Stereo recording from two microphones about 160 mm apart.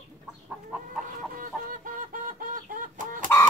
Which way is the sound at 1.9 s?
55° right (ahead or behind).